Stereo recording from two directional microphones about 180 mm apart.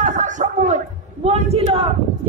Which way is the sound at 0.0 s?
45° right (ahead or behind).